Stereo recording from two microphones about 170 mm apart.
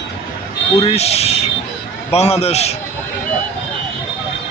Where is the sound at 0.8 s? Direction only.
40° left (ahead or behind).